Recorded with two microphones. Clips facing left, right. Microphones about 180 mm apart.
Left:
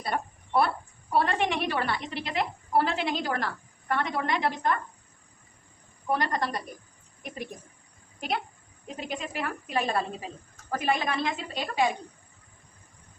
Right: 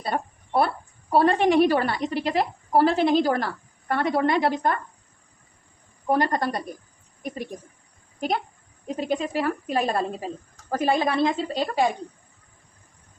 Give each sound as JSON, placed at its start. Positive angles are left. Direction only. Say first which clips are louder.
{"t": 0.0, "sound": "a sound", "louder": "right 3 dB", "side_deg": -25}
{"t": 1.1, "sound": "a woman's voice", "louder": "right 8 dB", "side_deg": -35}
{"t": 6.1, "sound": "speech", "louder": "right 5 dB", "side_deg": -35}
{"t": 9.0, "sound": "speech", "louder": "right 8 dB", "side_deg": -35}